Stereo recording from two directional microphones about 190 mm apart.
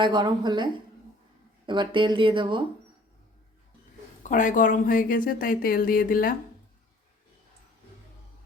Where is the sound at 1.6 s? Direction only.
25° right (ahead or behind).